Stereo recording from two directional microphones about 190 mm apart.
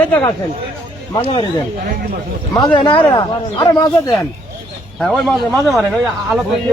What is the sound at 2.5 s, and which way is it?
Speech, 20° left (ahead or behind).